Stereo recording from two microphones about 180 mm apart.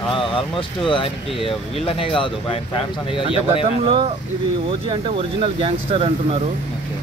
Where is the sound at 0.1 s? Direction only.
30° left (ahead or behind).